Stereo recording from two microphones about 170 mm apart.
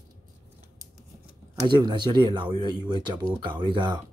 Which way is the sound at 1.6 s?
25° right (ahead or behind).